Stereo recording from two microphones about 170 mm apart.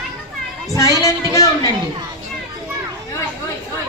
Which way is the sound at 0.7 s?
20° left (ahead or behind).